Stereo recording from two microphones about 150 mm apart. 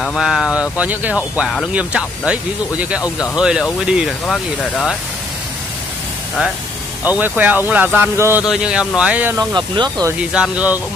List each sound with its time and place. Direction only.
0.0 s speech: centre (ahead or behind)
7.1 s speech: 10° right (ahead or behind)
9.4 s speech: 30° right (ahead or behind)
10.3 s speech: 10° right (ahead or behind)